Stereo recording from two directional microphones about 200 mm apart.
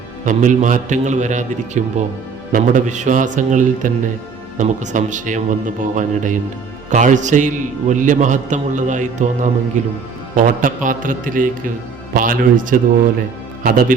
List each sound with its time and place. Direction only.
0.3 s a man's voice: 40° right (ahead or behind)